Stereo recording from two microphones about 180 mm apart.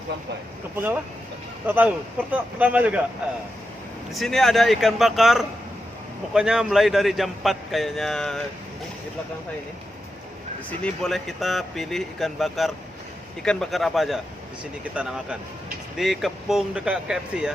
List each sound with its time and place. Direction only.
1.6 s speech: 10° right (ahead or behind)
4.1 s speech: centre (ahead or behind)
10.7 s speech: 5° left (ahead or behind)
16.0 s speech: centre (ahead or behind)